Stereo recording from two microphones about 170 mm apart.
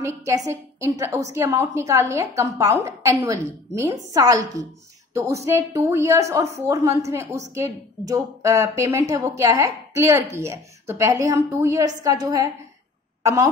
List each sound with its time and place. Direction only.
0.0 s a woman's voice: 20° right (ahead or behind)